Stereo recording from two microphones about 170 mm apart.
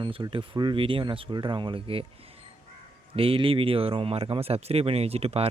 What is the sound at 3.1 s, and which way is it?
Speech, 35° right (ahead or behind).